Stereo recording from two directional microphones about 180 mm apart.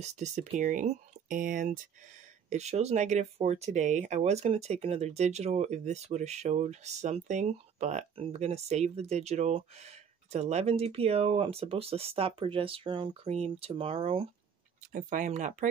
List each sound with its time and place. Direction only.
0.0 s speech: 40° right (ahead or behind)
2.5 s speech: 35° right (ahead or behind)
14.9 s speech: 45° right (ahead or behind)